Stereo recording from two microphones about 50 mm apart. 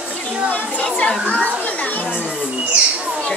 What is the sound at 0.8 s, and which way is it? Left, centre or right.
Speech, centre.